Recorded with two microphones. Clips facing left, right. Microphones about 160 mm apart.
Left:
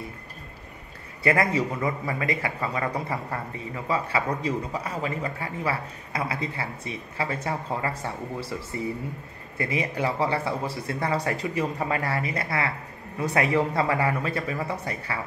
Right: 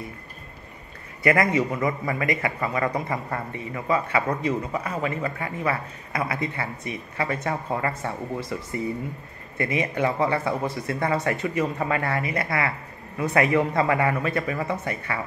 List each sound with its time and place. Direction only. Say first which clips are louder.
1.2 s a man's voice: right 2 dB; 30° left (ahead or behind)